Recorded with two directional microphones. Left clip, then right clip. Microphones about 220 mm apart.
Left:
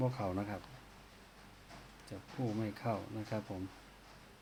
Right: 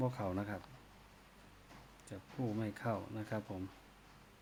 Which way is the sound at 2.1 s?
20° right (ahead or behind).